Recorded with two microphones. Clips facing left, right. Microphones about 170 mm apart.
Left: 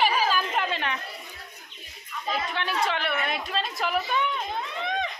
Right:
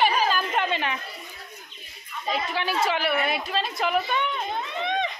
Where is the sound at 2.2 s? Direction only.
5° right (ahead or behind).